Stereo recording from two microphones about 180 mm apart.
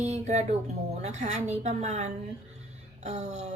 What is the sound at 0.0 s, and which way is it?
Speech, 40° right (ahead or behind).